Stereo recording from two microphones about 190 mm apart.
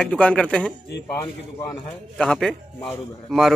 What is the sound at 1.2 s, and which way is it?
Speech, 15° left (ahead or behind).